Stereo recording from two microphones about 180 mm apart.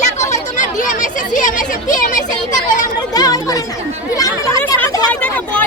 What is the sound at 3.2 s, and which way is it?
Chatter, 20° left (ahead or behind).